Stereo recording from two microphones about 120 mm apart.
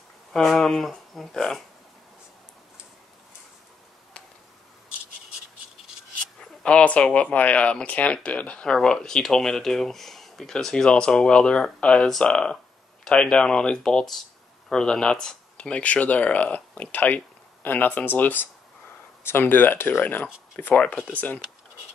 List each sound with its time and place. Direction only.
0.3 s speech: 5° left (ahead or behind)
6.6 s speech: 10° left (ahead or behind)